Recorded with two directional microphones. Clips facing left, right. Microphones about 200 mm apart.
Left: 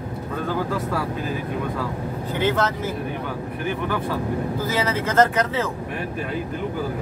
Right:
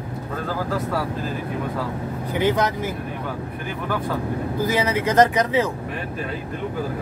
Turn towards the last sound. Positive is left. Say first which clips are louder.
# right 2 dB
turn(degrees=-15)  # may be behind; listen again after turning